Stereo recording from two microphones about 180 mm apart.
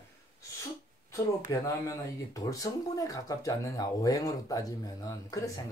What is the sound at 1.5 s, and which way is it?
Speech, 20° left (ahead or behind).